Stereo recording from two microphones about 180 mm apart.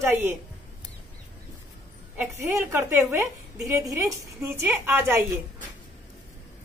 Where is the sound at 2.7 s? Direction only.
15° right (ahead or behind).